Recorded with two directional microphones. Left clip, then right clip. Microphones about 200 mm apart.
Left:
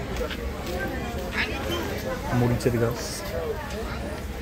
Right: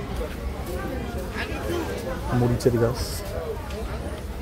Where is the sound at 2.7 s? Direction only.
30° right (ahead or behind).